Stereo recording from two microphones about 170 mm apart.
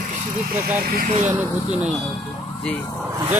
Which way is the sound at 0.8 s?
50° right (ahead or behind).